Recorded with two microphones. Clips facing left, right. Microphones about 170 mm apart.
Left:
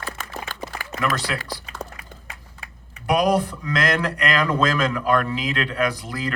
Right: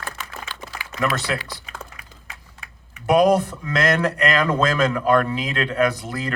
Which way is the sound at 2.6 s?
35° left (ahead or behind).